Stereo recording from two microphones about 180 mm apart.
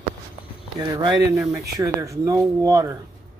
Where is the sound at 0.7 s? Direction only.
20° right (ahead or behind).